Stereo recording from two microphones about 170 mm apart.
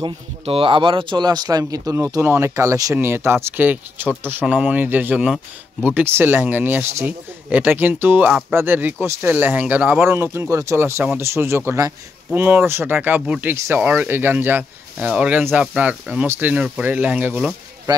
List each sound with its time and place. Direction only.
0.0 s speech: 30° right (ahead or behind); by 17.6 s 10° right (ahead or behind)